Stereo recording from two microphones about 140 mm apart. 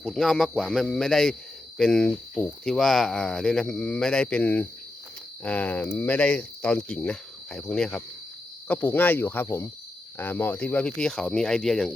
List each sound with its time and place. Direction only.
0.0 s speech: centre (ahead or behind)